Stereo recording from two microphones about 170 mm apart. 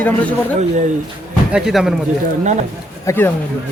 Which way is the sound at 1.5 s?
5° right (ahead or behind).